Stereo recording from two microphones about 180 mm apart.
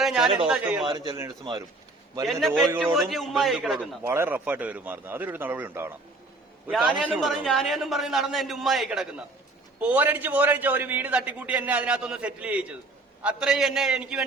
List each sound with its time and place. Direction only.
0.0 s a man's voice: centre (ahead or behind)
0.9 s a man's voice: 25° right (ahead or behind)
6.7 s a man's voice: centre (ahead or behind)